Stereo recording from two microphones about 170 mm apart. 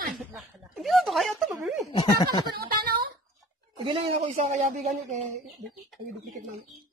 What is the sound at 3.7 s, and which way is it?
Speech, 35° right (ahead or behind).